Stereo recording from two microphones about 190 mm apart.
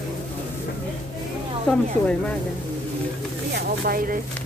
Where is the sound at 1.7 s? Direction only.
5° left (ahead or behind).